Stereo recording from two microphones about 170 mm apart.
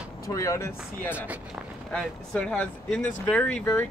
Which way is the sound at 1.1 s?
10° right (ahead or behind).